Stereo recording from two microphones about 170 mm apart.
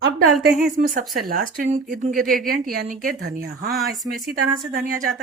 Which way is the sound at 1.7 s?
50° right (ahead or behind).